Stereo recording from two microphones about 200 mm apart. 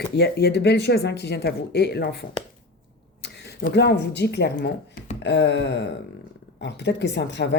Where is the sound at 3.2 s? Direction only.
55° left (ahead or behind).